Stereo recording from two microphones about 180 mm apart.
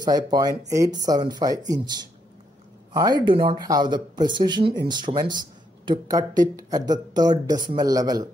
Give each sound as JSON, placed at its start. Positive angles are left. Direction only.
{"t": 0.0, "sound": "speech", "side_deg": -20}